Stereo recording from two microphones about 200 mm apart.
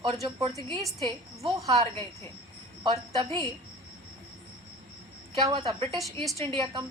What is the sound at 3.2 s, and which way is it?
Speech, 25° right (ahead or behind).